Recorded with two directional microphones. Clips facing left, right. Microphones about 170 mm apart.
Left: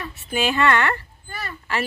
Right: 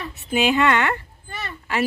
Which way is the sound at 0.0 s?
20° right (ahead or behind).